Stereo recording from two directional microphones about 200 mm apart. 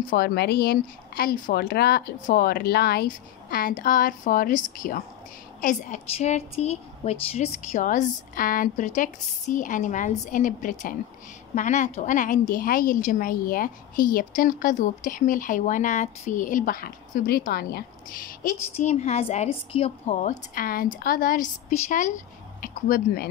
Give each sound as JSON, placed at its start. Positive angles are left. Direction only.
{"t": 0.1, "sound": "a woman's voice", "side_deg": 50}
{"t": 18.4, "sound": "a woman's voice", "side_deg": 35}